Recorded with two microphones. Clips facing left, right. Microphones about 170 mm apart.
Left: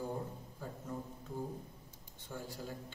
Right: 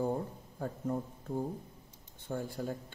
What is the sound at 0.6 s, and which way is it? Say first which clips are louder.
Speech: right 8 dB; 55° right (ahead or behind).